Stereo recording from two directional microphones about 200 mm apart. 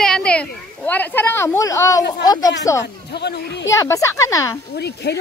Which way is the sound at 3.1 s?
55° left (ahead or behind).